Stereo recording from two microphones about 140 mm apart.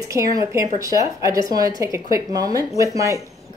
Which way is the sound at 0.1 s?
25° right (ahead or behind).